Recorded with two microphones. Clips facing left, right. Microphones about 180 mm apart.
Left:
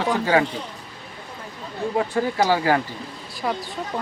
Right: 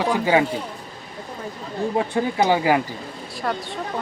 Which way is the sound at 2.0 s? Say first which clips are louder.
Even; 20° right (ahead or behind).